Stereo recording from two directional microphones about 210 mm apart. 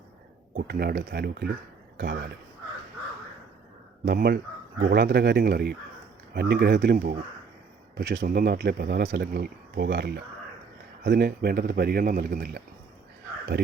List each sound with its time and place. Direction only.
0.5 s speech: 45° right (ahead or behind)
4.0 s speech: 50° right (ahead or behind)